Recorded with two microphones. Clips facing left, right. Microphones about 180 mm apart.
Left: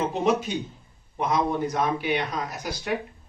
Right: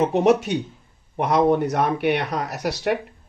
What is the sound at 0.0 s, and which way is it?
Speech, 70° right (ahead or behind).